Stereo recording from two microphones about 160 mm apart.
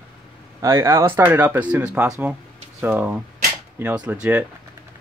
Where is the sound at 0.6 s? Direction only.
15° right (ahead or behind).